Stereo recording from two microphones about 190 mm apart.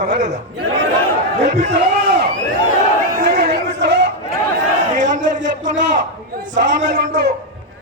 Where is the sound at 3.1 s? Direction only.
55° right (ahead or behind).